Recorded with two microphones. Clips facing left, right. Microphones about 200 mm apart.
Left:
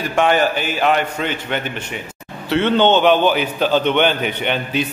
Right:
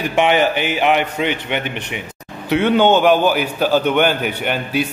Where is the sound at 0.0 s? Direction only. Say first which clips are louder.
Right 1 dB; 15° right (ahead or behind).